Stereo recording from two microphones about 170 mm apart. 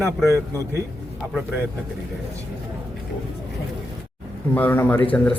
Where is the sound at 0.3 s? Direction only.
15° right (ahead or behind).